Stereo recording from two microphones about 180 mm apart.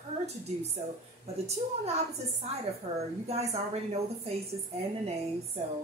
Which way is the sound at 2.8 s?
35° right (ahead or behind).